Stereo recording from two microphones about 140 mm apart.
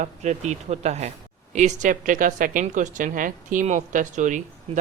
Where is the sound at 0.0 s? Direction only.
55° right (ahead or behind).